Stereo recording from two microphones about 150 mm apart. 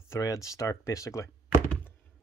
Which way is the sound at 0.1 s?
20° left (ahead or behind).